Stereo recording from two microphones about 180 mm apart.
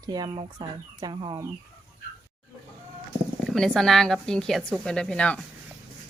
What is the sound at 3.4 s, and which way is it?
Speech, centre (ahead or behind).